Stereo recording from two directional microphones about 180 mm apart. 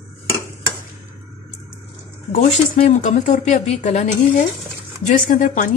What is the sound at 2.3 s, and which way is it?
A woman's voice, 45° left (ahead or behind).